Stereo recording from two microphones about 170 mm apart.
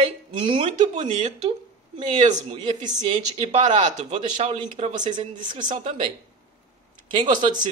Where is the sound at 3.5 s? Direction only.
40° right (ahead or behind).